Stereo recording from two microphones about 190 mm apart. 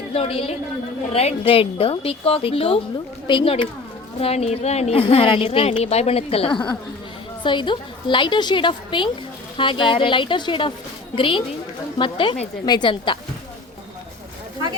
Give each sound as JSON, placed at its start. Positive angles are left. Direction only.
{"t": 0.1, "sound": "a woman's voice", "side_deg": 30}